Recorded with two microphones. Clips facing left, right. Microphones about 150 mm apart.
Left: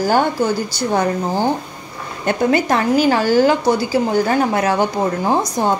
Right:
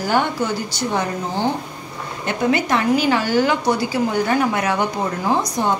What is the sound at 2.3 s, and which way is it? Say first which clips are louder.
A woman's voice: left 3 dB; 40° left (ahead or behind).